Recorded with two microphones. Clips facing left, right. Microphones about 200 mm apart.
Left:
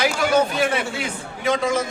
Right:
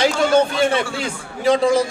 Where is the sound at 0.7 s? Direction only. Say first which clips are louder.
Right 3 dB; 30° right (ahead or behind).